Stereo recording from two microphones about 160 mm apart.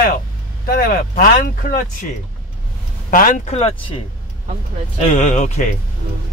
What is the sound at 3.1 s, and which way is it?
Speech, 60° left (ahead or behind).